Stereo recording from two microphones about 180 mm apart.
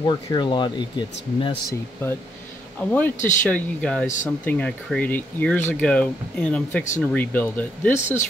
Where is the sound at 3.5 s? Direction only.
5° left (ahead or behind).